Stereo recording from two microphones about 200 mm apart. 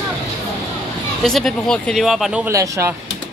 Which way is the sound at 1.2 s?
Centre (ahead or behind).